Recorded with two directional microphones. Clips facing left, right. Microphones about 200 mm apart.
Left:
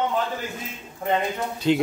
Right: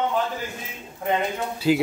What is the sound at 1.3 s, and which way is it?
Speech, 5° right (ahead or behind).